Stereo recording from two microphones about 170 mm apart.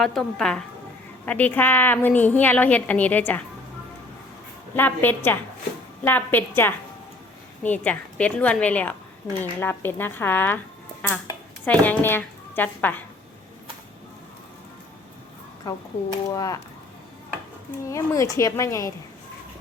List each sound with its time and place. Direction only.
0.0 s a woman's voice: 5° left (ahead or behind)
4.7 s a woman's voice: 10° left (ahead or behind)
11.6 s a woman's voice: 10° left (ahead or behind)
15.6 s speech: 20° left (ahead or behind)
17.8 s speech: 20° left (ahead or behind)